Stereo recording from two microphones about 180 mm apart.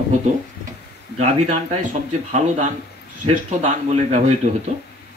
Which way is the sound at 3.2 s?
35° right (ahead or behind).